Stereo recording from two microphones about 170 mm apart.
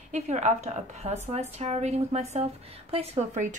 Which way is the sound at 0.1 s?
45° right (ahead or behind).